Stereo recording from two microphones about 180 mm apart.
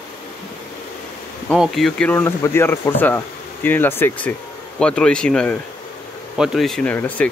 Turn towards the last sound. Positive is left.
turn(degrees=10)  # may be behind; listen again after turning